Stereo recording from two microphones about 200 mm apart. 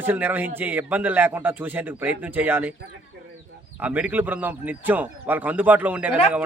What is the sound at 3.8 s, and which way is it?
Speech, 5° right (ahead or behind).